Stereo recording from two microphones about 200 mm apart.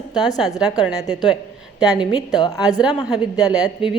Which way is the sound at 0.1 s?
20° left (ahead or behind).